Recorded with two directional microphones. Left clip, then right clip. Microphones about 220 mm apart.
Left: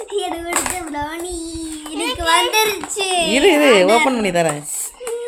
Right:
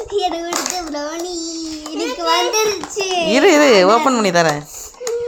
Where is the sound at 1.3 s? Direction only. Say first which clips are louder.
Right 2 dB; 25° left (ahead or behind).